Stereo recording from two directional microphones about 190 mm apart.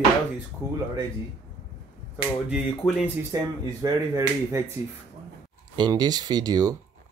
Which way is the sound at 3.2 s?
20° right (ahead or behind).